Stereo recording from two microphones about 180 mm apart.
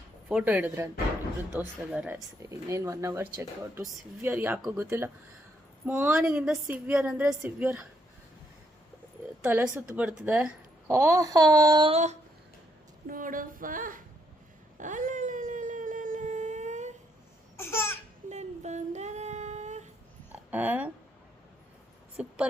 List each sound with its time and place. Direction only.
0.3 s speech: 5° right (ahead or behind)
2.4 s speech: 15° right (ahead or behind)
9.4 s speech: 10° right (ahead or behind)
11.9 s a sound: 40° right (ahead or behind)
13.1 s female singing: 50° right (ahead or behind)
14.8 s a sound: 45° right (ahead or behind)
17.6 s laughter: 15° left (ahead or behind)
18.3 s singing: 40° right (ahead or behind)
20.5 s speech: 10° right (ahead or behind)
22.2 s a woman's voice: 5° right (ahead or behind)